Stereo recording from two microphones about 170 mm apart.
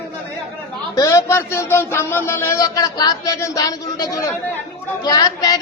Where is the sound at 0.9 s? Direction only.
20° left (ahead or behind).